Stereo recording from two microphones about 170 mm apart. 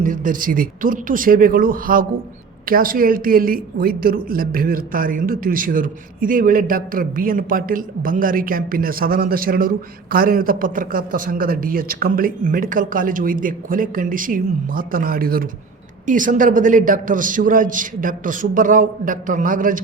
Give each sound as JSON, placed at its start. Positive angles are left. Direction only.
{"t": 0.0, "sound": "a woman's voice", "side_deg": -50}